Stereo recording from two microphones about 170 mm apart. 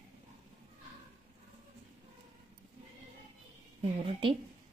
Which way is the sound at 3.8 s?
30° right (ahead or behind).